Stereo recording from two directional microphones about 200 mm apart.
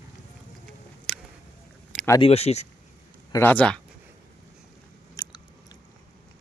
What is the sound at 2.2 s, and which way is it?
Speech, 30° left (ahead or behind).